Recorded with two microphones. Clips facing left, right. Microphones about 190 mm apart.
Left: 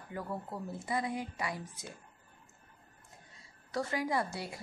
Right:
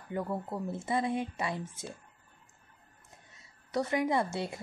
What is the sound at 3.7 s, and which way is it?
Speech, 20° right (ahead or behind).